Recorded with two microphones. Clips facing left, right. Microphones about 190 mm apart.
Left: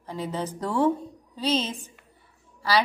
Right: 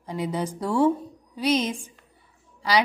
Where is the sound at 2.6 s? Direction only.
15° right (ahead or behind).